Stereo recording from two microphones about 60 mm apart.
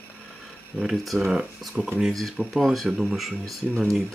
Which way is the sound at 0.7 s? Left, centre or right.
Centre.